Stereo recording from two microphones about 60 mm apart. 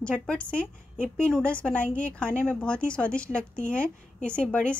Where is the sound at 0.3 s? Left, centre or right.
Centre.